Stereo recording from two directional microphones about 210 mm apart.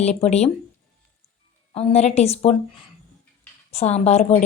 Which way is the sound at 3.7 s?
30° left (ahead or behind).